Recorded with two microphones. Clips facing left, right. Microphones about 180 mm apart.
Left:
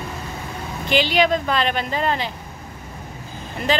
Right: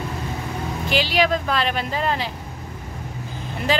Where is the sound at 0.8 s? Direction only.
5° right (ahead or behind).